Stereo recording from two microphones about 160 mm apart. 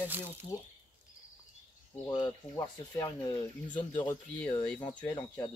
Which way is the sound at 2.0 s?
25° left (ahead or behind).